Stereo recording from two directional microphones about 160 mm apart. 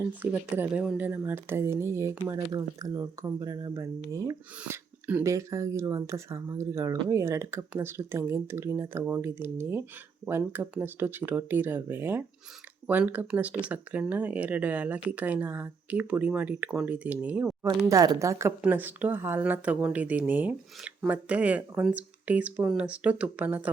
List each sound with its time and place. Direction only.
0.0 s speech: 10° right (ahead or behind)
17.8 s speech: 20° right (ahead or behind)